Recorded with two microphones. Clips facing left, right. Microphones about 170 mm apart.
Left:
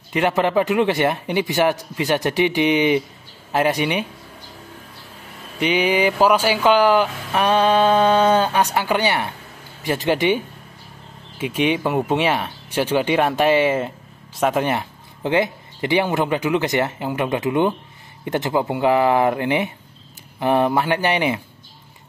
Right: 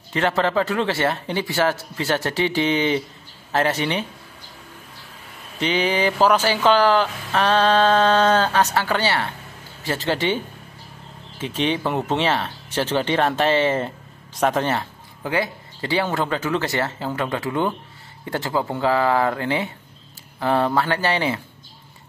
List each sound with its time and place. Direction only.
0.1 s speech: 15° left (ahead or behind)
5.6 s speech: 10° left (ahead or behind)